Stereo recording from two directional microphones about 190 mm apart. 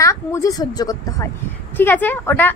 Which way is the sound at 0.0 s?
15° left (ahead or behind).